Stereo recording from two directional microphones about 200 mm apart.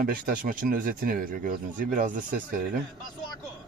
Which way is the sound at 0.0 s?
45° right (ahead or behind).